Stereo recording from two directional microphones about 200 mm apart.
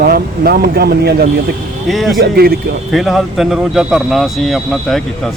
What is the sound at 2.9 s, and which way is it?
Speech, centre (ahead or behind).